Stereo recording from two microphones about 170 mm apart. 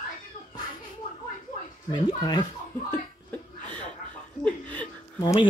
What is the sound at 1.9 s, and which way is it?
Speech, 25° left (ahead or behind).